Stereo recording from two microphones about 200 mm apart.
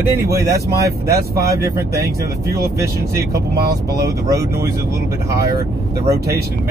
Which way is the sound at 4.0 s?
15° right (ahead or behind).